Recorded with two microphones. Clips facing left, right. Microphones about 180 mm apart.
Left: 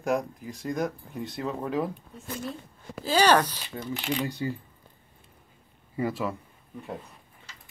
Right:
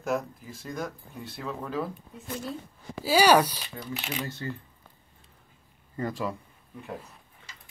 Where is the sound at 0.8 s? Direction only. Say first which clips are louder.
Left 4 dB; 20° left (ahead or behind).